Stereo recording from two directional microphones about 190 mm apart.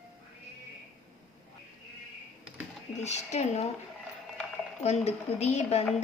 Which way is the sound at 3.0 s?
35° left (ahead or behind).